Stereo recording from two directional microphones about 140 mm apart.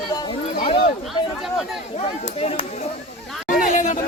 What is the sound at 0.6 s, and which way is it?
Speech, 40° left (ahead or behind).